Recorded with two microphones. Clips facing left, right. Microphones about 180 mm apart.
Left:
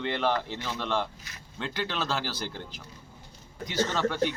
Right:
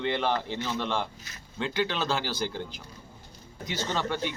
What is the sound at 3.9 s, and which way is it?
Speech, 5° left (ahead or behind).